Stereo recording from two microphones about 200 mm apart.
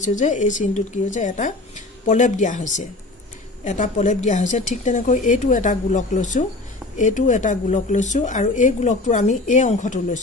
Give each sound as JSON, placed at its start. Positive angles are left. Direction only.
{"t": 0.0, "sound": "a woman's voice", "side_deg": 40}